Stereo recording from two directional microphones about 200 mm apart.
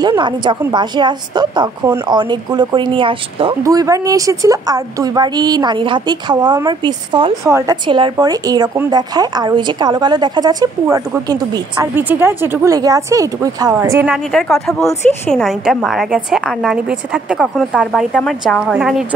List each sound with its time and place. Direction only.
0.0 s a woman's voice: 20° right (ahead or behind)
14.1 s a woman's voice: centre (ahead or behind)